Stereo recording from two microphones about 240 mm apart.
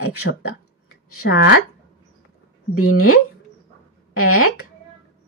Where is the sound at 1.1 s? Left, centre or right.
Left.